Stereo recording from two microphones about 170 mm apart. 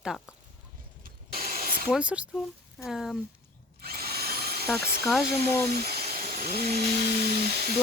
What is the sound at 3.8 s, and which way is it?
Drill, 65° right (ahead or behind).